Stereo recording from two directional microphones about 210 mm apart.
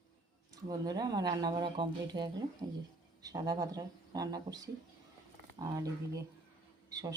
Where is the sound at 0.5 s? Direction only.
20° right (ahead or behind).